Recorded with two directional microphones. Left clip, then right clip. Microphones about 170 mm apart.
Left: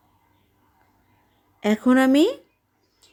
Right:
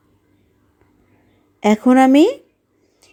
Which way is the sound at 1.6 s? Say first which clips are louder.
Right 7 dB; 20° right (ahead or behind).